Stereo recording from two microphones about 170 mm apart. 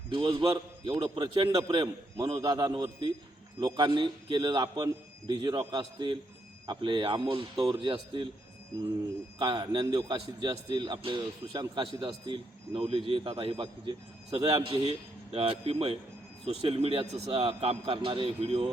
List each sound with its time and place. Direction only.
0.1 s a man's voice: 30° right (ahead or behind)
9.4 s a man's voice: 30° right (ahead or behind)